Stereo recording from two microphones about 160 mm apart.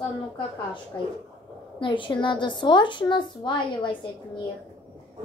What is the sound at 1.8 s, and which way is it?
A woman's voice, 30° left (ahead or behind).